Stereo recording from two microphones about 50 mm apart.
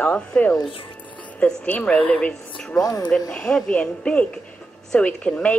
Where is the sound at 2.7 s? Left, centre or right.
Centre.